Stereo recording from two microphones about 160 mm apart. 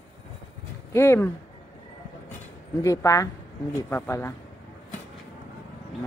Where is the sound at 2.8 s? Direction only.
20° left (ahead or behind).